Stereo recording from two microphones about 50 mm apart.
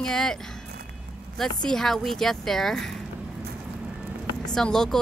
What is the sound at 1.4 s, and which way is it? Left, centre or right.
Speech, centre.